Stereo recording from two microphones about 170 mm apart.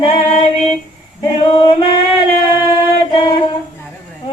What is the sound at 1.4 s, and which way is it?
Singing, 30° left (ahead or behind).